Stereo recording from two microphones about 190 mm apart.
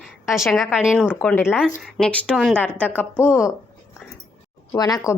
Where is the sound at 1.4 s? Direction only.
5° right (ahead or behind); by 3.5 s 15° left (ahead or behind).